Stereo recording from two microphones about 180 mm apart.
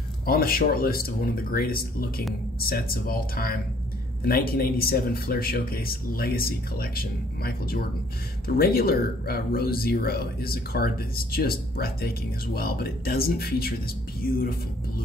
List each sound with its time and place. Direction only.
0.2 s speech: 55° left (ahead or behind)